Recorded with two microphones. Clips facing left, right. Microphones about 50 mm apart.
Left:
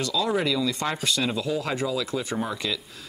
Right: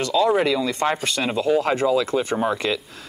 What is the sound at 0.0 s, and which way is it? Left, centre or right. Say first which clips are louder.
Speech: right 6 dB; right.